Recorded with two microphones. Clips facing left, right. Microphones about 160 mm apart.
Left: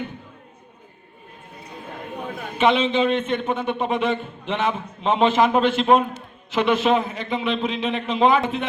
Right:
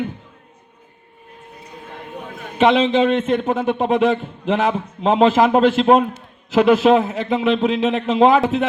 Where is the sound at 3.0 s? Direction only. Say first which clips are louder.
Right 4 dB; centre (ahead or behind).